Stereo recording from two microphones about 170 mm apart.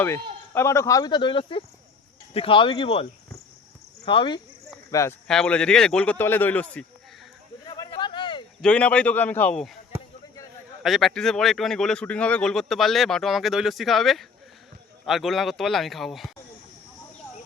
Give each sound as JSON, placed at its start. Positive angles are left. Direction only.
{"t": 0.0, "sound": "speech", "side_deg": 15}
{"t": 4.9, "sound": "speech", "side_deg": 20}
{"t": 5.3, "sound": "a man's voice", "side_deg": 5}
{"t": 7.7, "sound": "a sound", "side_deg": 25}
{"t": 8.6, "sound": "a man's voice", "side_deg": 10}
{"t": 10.8, "sound": "speech", "side_deg": 0}